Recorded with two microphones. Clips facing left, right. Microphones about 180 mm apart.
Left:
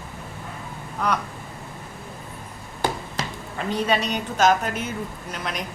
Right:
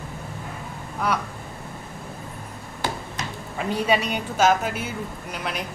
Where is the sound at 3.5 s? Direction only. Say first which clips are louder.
Right 1 dB; 10° right (ahead or behind).